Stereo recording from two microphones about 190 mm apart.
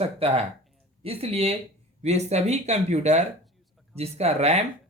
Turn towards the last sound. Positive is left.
turn(degrees=-35)  # may be behind; listen again after turning